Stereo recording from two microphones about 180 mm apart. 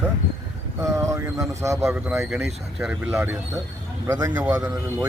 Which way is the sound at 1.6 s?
15° right (ahead or behind).